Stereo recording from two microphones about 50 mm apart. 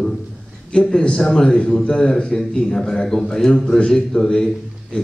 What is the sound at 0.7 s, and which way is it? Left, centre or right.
A man's voice, centre.